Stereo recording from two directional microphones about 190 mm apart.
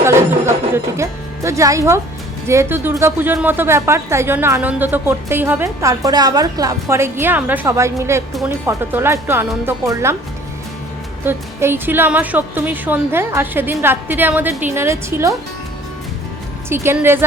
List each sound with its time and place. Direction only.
0.0 s speech: 15° right (ahead or behind)
11.3 s speech: 10° right (ahead or behind)
16.6 s speech: 15° right (ahead or behind)